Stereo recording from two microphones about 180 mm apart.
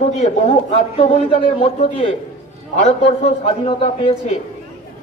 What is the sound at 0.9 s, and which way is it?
A man's voice, 35° left (ahead or behind).